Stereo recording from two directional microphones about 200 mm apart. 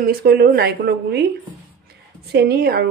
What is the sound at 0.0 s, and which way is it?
Speech, 50° right (ahead or behind).